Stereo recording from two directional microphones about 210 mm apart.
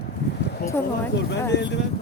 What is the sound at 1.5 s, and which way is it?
Speech, 55° left (ahead or behind).